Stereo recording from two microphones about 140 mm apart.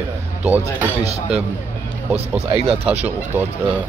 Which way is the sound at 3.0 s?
10° right (ahead or behind).